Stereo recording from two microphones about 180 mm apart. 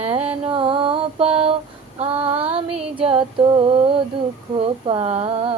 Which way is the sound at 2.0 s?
35° right (ahead or behind).